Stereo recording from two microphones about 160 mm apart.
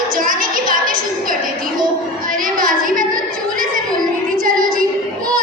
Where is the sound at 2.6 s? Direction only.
60° right (ahead or behind).